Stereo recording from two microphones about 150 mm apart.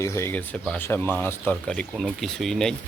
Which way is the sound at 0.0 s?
20° left (ahead or behind).